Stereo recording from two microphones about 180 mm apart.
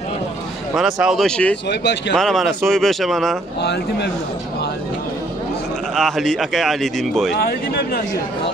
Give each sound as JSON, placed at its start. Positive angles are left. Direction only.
{"t": 0.7, "sound": "speech", "side_deg": -5}
{"t": 1.7, "sound": "speech", "side_deg": 70}
{"t": 2.1, "sound": "speech", "side_deg": 0}
{"t": 3.6, "sound": "speech", "side_deg": 70}
{"t": 5.9, "sound": "speech", "side_deg": 0}
{"t": 7.3, "sound": "speech", "side_deg": 60}